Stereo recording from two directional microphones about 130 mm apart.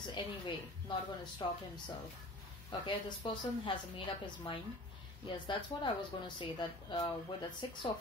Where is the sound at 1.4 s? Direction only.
40° left (ahead or behind).